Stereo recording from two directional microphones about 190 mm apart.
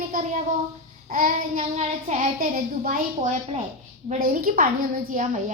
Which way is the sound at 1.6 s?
35° right (ahead or behind).